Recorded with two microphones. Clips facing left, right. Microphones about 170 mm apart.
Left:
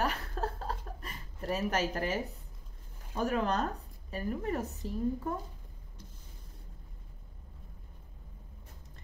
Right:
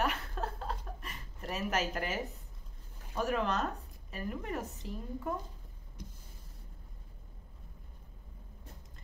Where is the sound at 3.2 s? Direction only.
35° left (ahead or behind).